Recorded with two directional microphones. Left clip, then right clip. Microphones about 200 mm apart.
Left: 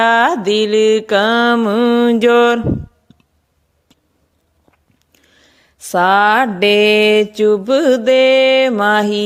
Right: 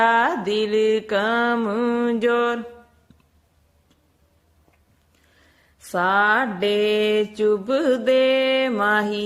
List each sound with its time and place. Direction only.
0.0 s mantra: 45° left (ahead or behind)
5.3 s mantra: 45° left (ahead or behind)